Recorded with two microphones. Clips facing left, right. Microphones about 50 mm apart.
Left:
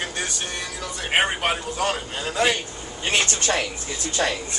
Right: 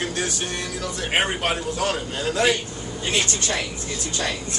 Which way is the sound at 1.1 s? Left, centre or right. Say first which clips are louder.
Left 2 dB; centre.